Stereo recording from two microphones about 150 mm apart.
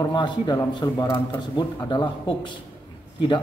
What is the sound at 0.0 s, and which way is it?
A man's voice, 30° left (ahead or behind).